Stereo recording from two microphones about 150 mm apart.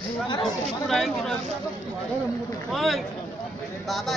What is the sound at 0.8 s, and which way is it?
Speech, centre (ahead or behind).